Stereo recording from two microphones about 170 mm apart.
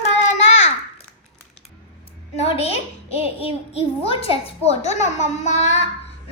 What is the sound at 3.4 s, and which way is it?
A child's voice, 35° left (ahead or behind).